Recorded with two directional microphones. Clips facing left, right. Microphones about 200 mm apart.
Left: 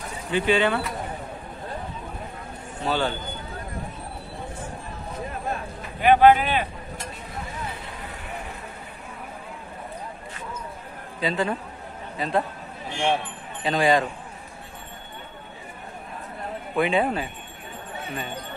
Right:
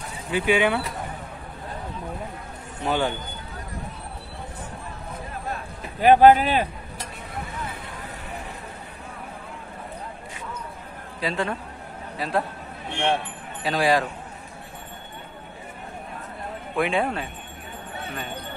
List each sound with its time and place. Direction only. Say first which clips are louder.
0.3 s speech: even; 10° right (ahead or behind)
2.8 s speech: right 1 dB; 15° right (ahead or behind)
5.9 s speech: right 2 dB; 40° right (ahead or behind)
11.1 s speech: left 2 dB; centre (ahead or behind)
16.7 s speech: left 1 dB; centre (ahead or behind)